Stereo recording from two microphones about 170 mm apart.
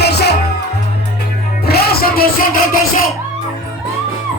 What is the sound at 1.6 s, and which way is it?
Music, 65° left (ahead or behind).